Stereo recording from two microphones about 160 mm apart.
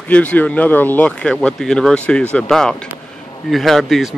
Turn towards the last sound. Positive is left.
turn(degrees=0)  # may be behind; listen again after turning